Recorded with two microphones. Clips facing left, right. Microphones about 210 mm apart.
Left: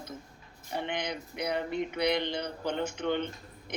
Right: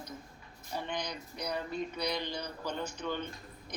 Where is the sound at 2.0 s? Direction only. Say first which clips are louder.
Left 6 dB; 25° left (ahead or behind).